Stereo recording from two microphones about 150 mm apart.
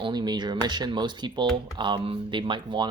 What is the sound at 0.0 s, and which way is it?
Speech, 30° right (ahead or behind).